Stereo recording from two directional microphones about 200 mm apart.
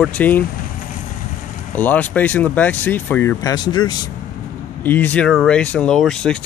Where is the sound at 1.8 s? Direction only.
10° left (ahead or behind).